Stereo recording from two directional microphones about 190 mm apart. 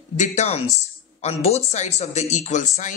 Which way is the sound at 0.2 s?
35° left (ahead or behind).